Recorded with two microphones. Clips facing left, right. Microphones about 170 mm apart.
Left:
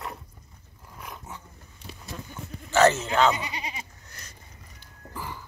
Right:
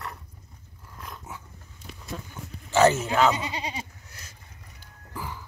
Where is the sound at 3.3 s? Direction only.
25° right (ahead or behind).